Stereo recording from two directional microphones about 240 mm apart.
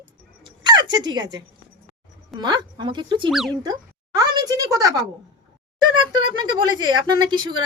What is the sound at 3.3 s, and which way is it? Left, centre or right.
Speech, centre.